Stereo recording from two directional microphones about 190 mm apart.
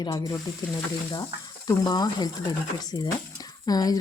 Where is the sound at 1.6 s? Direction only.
20° left (ahead or behind).